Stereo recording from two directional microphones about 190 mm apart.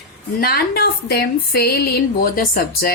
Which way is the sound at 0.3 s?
55° left (ahead or behind).